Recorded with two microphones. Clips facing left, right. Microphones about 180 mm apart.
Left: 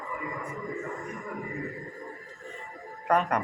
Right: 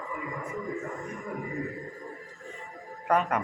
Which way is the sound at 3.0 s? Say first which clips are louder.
Even; centre (ahead or behind).